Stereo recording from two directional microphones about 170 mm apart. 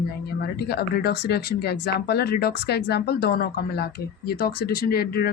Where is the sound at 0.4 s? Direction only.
70° left (ahead or behind).